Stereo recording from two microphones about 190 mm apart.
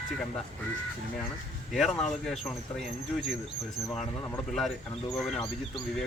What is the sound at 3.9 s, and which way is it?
Speech, 10° left (ahead or behind).